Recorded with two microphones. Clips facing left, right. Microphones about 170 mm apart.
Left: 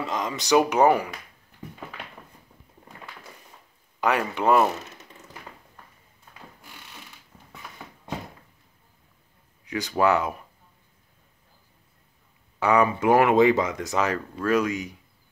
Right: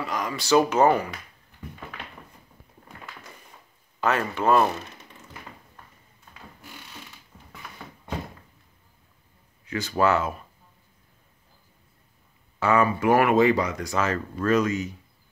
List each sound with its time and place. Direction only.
0.0 s speech: 25° left (ahead or behind)
4.0 s speech: 15° left (ahead or behind)
7.3 s a sound: 5° left (ahead or behind)
9.7 s speech: 15° left (ahead or behind)
12.5 s speech: 15° left (ahead or behind)